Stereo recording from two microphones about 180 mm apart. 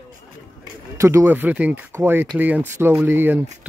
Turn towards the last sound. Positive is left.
turn(degrees=-10)  # may be behind; listen again after turning